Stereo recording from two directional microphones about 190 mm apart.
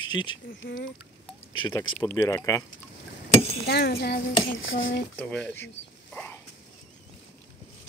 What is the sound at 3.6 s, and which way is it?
Cutlery, 55° left (ahead or behind).